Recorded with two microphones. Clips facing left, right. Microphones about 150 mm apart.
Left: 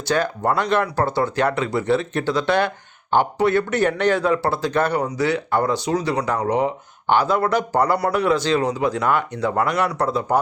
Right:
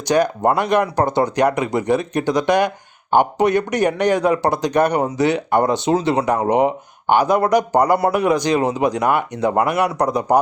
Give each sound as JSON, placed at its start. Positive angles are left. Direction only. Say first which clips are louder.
{"t": 0.0, "sound": "speech", "louder": "right 5 dB", "side_deg": -15}